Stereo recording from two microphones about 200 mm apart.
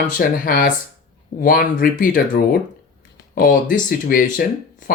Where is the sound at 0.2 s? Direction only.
45° left (ahead or behind).